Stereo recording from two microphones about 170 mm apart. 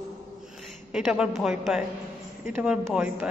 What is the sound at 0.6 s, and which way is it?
A woman's voice, centre (ahead or behind).